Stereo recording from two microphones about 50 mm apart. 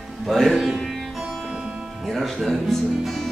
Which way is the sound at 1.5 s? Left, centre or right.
Centre.